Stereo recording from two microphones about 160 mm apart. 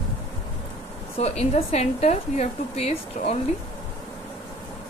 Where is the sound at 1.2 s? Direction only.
40° left (ahead or behind).